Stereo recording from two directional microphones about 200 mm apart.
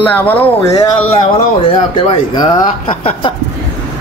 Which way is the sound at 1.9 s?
25° left (ahead or behind).